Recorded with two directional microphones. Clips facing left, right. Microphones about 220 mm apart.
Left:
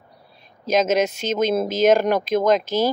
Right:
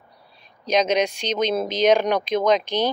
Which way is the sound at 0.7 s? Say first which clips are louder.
Left 1 dB; 5° left (ahead or behind).